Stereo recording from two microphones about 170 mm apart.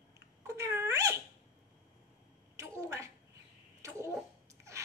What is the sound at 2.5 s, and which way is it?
Bathtub, 20° right (ahead or behind).